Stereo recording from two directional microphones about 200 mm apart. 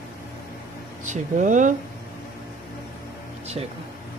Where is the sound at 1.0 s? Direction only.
40° right (ahead or behind).